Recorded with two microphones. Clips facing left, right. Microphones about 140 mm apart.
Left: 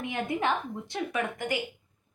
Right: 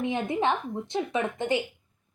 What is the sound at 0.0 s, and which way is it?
A woman's voice, 20° right (ahead or behind).